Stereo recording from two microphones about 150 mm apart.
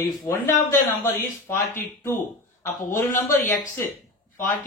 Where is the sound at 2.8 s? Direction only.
65° left (ahead or behind).